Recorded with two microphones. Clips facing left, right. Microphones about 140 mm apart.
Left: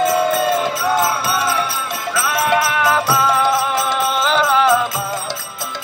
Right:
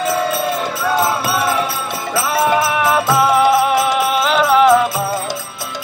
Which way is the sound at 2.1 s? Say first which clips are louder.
Right 2 dB; 20° right (ahead or behind).